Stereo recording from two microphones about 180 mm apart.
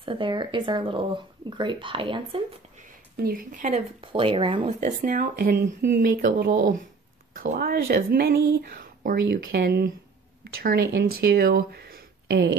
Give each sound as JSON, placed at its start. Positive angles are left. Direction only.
{"t": 0.0, "sound": "speech", "side_deg": -30}
{"t": 3.3, "sound": "speech", "side_deg": -50}
{"t": 4.0, "sound": "speech", "side_deg": -30}
{"t": 4.7, "sound": "speech", "side_deg": -50}